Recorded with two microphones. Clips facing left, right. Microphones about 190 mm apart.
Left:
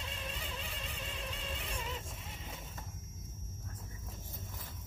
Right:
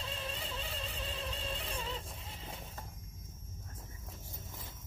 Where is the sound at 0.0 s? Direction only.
30° right (ahead or behind).